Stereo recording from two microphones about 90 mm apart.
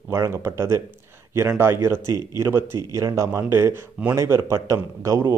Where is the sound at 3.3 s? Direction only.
25° right (ahead or behind).